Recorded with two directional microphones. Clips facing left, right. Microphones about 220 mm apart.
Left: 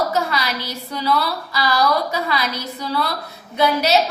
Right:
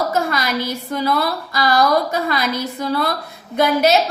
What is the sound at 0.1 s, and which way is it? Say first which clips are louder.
A woman's voice: right 2 dB; 50° right (ahead or behind).